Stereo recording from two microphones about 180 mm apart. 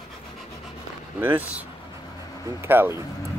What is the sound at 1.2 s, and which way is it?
Speech, 10° right (ahead or behind).